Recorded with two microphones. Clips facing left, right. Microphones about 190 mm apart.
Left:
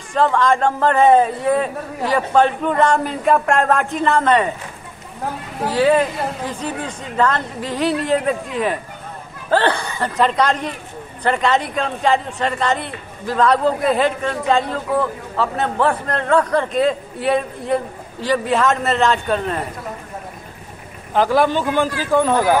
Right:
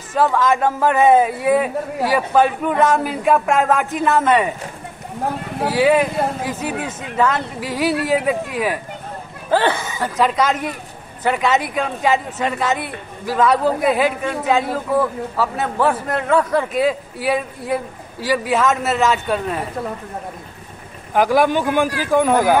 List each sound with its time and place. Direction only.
0.1 s speech: 5° right (ahead or behind)
5.7 s speech: 10° right (ahead or behind)
21.1 s speech: 10° right (ahead or behind)